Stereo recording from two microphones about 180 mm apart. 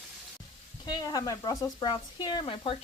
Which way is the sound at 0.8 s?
20° left (ahead or behind).